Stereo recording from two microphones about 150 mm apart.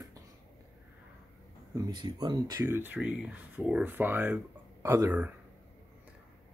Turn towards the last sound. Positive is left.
turn(degrees=-20)  # may be behind; listen again after turning